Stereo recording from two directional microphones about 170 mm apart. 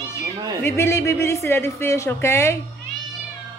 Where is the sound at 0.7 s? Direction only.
15° left (ahead or behind).